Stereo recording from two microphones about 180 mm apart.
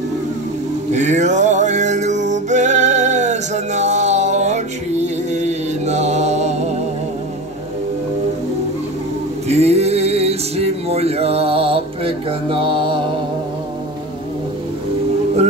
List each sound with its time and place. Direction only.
0.9 s music: 40° right (ahead or behind)
9.5 s music: 35° right (ahead or behind)